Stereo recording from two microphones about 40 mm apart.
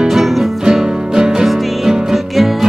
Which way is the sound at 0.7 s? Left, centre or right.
Centre.